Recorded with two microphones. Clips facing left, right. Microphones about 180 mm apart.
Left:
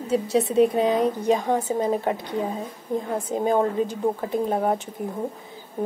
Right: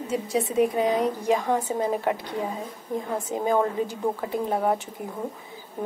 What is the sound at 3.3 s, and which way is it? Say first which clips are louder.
Speech: left 2 dB; 20° left (ahead or behind).